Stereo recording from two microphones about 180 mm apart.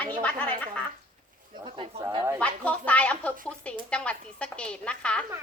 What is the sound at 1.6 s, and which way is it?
Speech, 30° right (ahead or behind).